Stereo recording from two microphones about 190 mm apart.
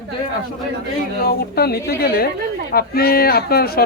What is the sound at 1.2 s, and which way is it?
A woman's voice, 55° left (ahead or behind).